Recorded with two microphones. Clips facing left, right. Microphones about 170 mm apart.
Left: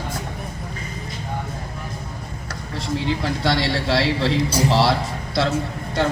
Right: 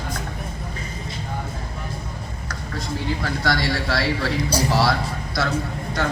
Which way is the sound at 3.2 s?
25° left (ahead or behind).